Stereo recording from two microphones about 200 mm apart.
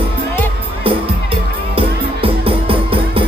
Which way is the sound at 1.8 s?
30° right (ahead or behind).